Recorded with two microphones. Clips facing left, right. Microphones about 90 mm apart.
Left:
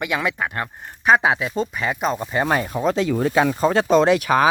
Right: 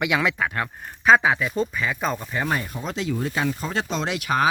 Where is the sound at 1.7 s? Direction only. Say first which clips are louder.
Left 3 dB; 20° left (ahead or behind).